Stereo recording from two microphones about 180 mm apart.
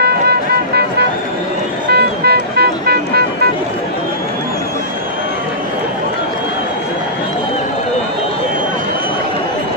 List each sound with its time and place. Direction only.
0.0 s music: 65° right (ahead or behind)
1.9 s vehicle: 60° right (ahead or behind)